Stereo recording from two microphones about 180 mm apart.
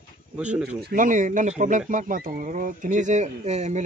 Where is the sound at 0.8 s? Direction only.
45° right (ahead or behind).